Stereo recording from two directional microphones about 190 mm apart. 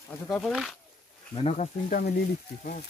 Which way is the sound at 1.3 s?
35° left (ahead or behind).